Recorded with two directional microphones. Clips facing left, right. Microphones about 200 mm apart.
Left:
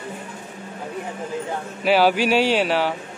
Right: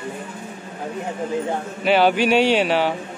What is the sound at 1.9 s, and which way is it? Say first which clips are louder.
Speech: right 1 dB; 5° left (ahead or behind).